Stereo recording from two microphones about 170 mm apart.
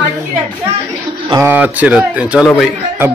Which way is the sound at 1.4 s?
10° right (ahead or behind).